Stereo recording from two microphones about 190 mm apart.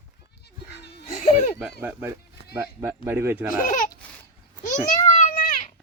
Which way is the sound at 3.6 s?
45° left (ahead or behind).